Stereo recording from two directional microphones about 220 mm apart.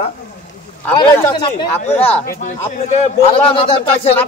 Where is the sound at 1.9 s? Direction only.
5° left (ahead or behind).